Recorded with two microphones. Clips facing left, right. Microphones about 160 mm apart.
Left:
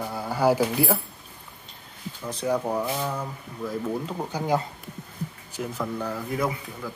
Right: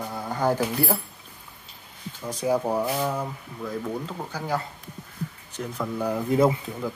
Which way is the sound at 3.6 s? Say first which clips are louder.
Left 2 dB; centre (ahead or behind).